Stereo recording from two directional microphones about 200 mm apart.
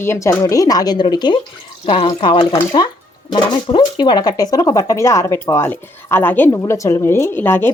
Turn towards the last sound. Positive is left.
turn(degrees=10)  # may be behind; listen again after turning